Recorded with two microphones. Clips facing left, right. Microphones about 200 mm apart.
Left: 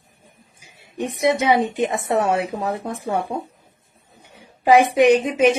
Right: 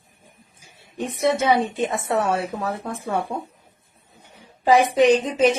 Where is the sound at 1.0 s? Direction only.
15° left (ahead or behind).